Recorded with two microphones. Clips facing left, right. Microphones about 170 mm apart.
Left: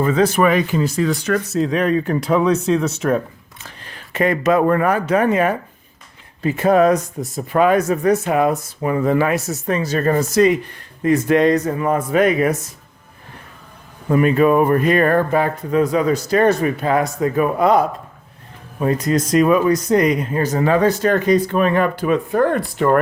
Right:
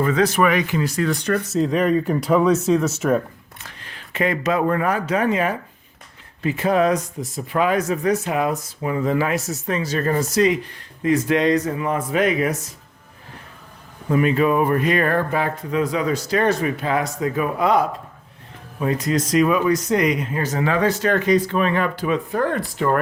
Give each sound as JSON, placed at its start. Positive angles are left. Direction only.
{"t": 0.0, "sound": "speech", "side_deg": 30}
{"t": 0.9, "sound": "speech", "side_deg": 5}
{"t": 3.8, "sound": "speech", "side_deg": 45}
{"t": 14.1, "sound": "speech", "side_deg": 50}